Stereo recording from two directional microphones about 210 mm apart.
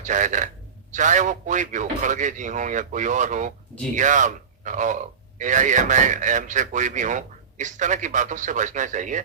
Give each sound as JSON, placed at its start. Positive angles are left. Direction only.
{"t": 0.0, "sound": "speech", "side_deg": -35}